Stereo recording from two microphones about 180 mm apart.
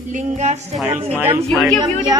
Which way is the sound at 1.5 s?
Centre (ahead or behind).